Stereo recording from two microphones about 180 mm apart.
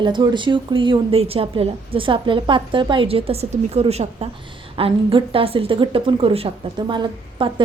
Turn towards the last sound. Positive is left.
turn(degrees=-25)  # may be behind; listen again after turning